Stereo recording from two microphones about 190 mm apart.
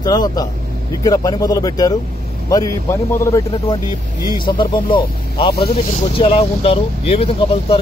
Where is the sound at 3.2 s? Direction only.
15° left (ahead or behind).